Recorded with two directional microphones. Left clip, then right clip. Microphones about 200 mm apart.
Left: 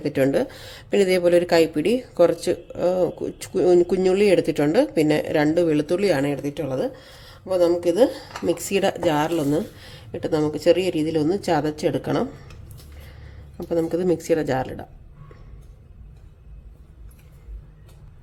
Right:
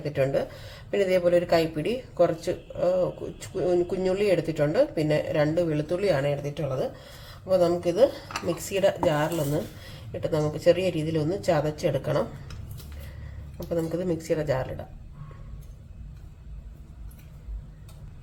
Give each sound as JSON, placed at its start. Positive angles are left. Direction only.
{"t": 0.0, "sound": "speech", "side_deg": 60}
{"t": 13.7, "sound": "speech", "side_deg": 55}